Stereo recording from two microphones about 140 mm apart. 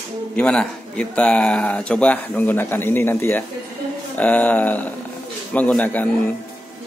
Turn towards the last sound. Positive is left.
turn(degrees=10)  # may be behind; listen again after turning